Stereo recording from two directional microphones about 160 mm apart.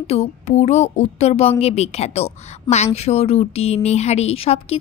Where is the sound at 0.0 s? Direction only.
40° left (ahead or behind).